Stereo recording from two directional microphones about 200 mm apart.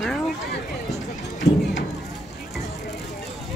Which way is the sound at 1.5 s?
30° left (ahead or behind).